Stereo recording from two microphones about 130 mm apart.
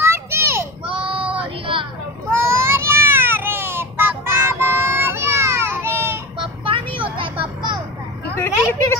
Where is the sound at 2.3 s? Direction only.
20° right (ahead or behind).